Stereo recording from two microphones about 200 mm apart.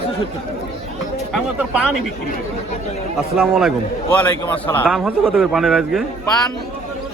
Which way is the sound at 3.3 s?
5° right (ahead or behind).